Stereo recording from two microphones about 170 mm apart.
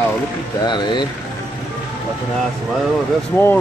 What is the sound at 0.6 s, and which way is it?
Speech, 25° left (ahead or behind).